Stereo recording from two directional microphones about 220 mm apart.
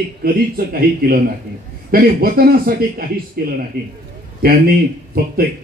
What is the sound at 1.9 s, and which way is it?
A man's voice, 45° right (ahead or behind).